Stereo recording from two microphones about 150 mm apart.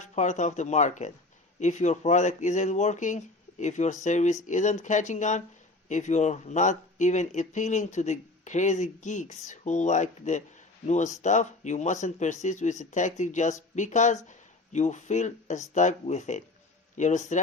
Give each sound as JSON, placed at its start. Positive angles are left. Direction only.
{"t": 0.0, "sound": "speech", "side_deg": 50}